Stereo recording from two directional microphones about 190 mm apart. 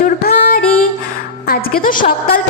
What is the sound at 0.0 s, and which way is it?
Music, 50° left (ahead or behind).